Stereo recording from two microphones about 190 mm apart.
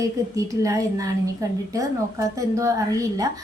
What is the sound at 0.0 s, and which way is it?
A woman's voice, 15° right (ahead or behind).